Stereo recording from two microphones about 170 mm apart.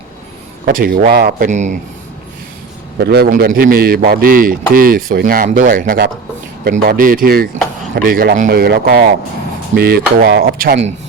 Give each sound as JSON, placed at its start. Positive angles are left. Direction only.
{"t": 0.6, "sound": "a man's voice", "side_deg": -55}
{"t": 1.5, "sound": "speech", "side_deg": -45}
{"t": 3.0, "sound": "a man's voice", "side_deg": -65}